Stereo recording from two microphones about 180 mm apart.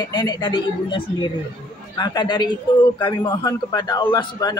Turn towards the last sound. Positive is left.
turn(degrees=25)  # may be behind; listen again after turning